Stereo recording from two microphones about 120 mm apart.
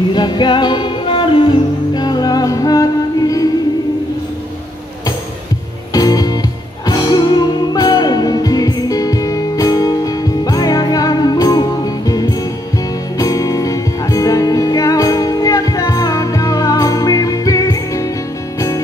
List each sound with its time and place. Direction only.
0.1 s music: 40° left (ahead or behind)
5.9 s music: 30° left (ahead or behind)